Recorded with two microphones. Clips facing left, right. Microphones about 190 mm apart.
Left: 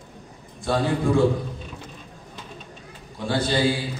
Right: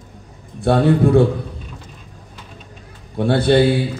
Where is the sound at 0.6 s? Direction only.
60° right (ahead or behind).